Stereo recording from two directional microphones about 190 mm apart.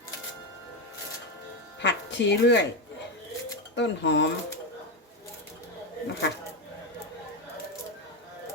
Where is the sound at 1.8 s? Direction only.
70° left (ahead or behind).